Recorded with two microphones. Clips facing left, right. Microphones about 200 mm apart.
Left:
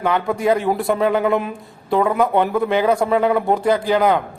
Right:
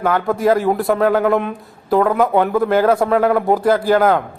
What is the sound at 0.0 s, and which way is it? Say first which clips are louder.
A man's voice: right 2 dB; centre (ahead or behind).